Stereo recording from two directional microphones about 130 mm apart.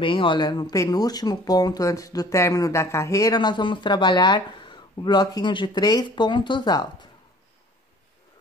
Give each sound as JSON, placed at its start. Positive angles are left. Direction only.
{"t": 0.0, "sound": "speech", "side_deg": 40}